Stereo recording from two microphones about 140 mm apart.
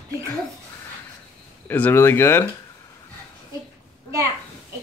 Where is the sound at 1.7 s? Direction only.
15° left (ahead or behind).